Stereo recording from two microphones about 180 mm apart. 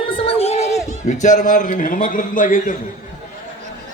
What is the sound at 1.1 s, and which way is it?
A man's voice, 45° left (ahead or behind).